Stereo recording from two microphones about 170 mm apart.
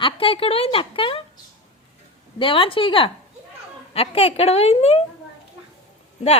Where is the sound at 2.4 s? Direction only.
30° left (ahead or behind).